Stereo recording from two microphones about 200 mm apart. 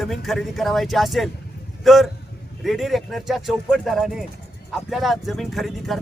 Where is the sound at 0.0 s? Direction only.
Centre (ahead or behind).